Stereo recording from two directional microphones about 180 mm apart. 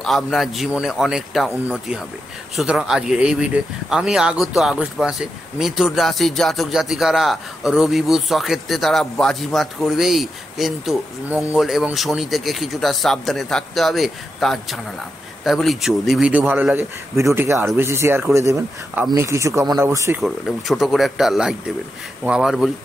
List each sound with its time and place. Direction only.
0.0 s speech: centre (ahead or behind); by 20.2 s 15° right (ahead or behind)
20.2 s speech: centre (ahead or behind)